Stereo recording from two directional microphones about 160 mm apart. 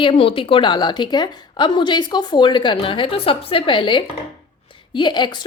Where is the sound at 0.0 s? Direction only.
35° left (ahead or behind).